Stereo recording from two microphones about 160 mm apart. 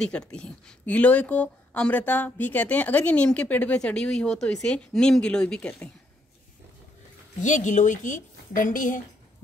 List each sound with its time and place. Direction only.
0.0 s speech: 5° left (ahead or behind)
7.4 s a woman's voice: 50° left (ahead or behind)